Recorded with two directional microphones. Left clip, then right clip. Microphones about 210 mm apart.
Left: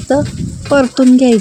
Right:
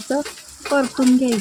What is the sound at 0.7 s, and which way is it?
Speech, 30° left (ahead or behind).